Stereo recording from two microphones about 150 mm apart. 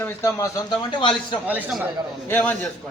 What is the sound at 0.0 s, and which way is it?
A man's voice, 20° left (ahead or behind).